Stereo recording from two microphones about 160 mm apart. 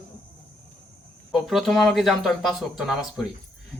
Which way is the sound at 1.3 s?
Centre (ahead or behind).